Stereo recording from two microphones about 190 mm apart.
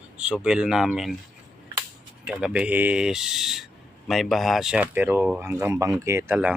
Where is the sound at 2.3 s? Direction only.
5° right (ahead or behind).